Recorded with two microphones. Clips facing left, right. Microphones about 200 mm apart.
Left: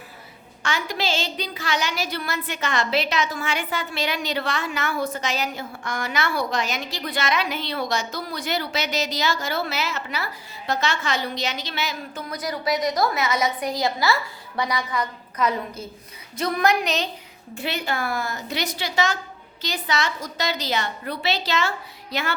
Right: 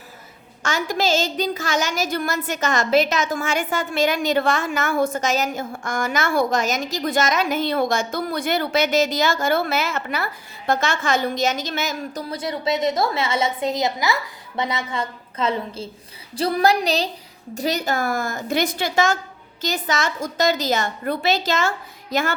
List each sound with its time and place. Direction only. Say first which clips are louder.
0.6 s a woman's voice: right 4 dB; 45° right (ahead or behind)
12.3 s a woman's voice: right 1 dB; 25° right (ahead or behind); by 22.4 s 45° right (ahead or behind)